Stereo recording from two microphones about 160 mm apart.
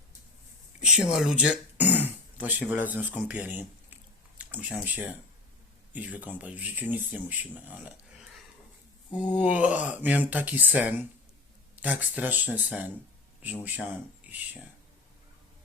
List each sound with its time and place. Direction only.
0.8 s speech: 5° right (ahead or behind)
9.4 s speech: 10° right (ahead or behind)